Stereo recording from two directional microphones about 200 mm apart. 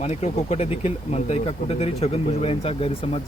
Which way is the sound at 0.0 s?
35° left (ahead or behind).